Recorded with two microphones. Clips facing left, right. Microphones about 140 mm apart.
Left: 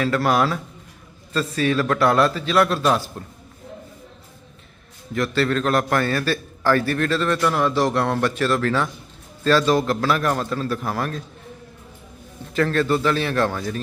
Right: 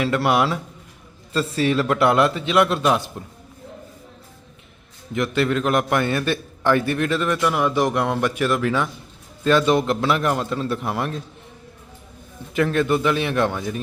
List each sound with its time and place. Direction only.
0.0 s a man's voice: 20° right (ahead or behind)
5.1 s a man's voice: 20° right (ahead or behind)
12.5 s a man's voice: 15° right (ahead or behind)